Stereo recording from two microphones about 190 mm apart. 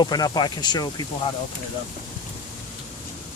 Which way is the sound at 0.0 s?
20° left (ahead or behind).